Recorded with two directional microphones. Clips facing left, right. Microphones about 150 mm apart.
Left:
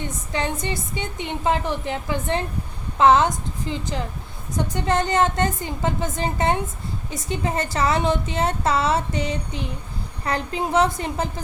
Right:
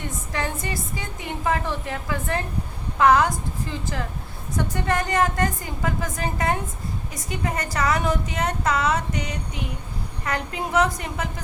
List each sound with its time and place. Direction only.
0.3 s a woman's voice: 20° left (ahead or behind)